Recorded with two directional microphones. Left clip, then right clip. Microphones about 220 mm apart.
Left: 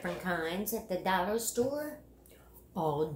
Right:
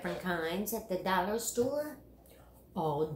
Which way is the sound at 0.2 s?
15° left (ahead or behind).